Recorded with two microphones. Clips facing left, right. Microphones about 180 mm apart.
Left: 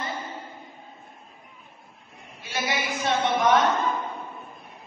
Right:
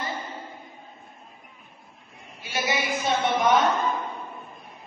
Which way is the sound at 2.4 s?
Centre (ahead or behind).